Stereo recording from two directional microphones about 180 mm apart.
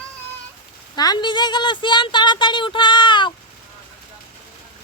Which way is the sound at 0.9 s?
20° left (ahead or behind).